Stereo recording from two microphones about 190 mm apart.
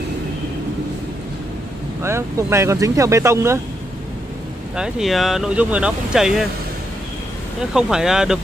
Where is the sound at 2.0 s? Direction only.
15° right (ahead or behind).